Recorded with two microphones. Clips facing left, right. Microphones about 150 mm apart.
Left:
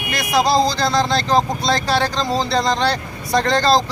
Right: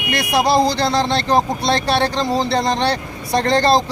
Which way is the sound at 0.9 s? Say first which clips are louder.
Even; 25° right (ahead or behind).